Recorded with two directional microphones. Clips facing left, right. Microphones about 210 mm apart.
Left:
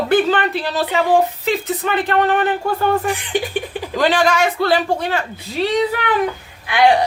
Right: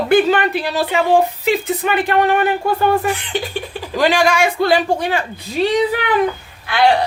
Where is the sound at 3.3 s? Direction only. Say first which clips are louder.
Left 2 dB; 15° left (ahead or behind).